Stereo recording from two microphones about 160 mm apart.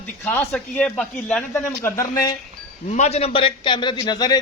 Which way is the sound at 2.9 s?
45° left (ahead or behind).